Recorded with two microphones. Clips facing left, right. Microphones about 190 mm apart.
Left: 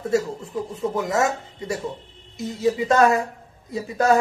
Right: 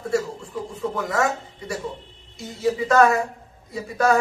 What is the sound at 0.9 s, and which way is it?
Speech, 20° left (ahead or behind).